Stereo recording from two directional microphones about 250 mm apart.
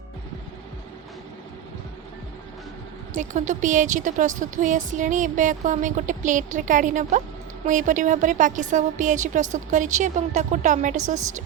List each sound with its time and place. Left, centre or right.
3.2 s speech: right